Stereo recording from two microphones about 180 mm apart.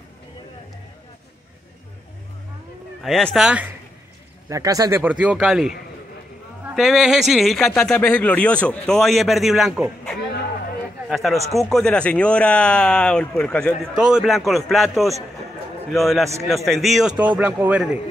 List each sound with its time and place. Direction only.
3.0 s speech: centre (ahead or behind)
4.5 s a man's voice: 20° right (ahead or behind); by 17.1 s centre (ahead or behind)
17.1 s speech: 25° right (ahead or behind)
17.4 s a man's voice: 10° right (ahead or behind)